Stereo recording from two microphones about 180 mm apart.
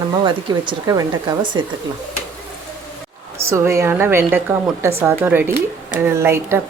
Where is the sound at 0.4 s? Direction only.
25° right (ahead or behind).